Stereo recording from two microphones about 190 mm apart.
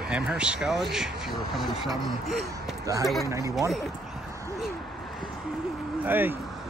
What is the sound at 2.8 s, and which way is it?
Speech, 20° right (ahead or behind).